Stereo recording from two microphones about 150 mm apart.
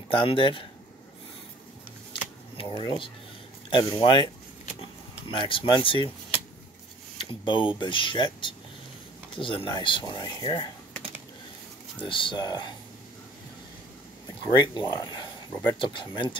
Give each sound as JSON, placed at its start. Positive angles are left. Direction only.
{"t": 0.1, "sound": "speech", "side_deg": 35}
{"t": 2.5, "sound": "speech", "side_deg": 30}
{"t": 5.3, "sound": "speech", "side_deg": 35}
{"t": 7.2, "sound": "speech", "side_deg": 35}
{"t": 12.0, "sound": "speech", "side_deg": 35}
{"t": 14.5, "sound": "speech", "side_deg": 30}